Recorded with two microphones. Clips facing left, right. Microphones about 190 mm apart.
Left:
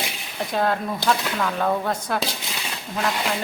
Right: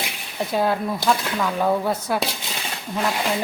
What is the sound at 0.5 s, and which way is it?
Speech, 5° right (ahead or behind).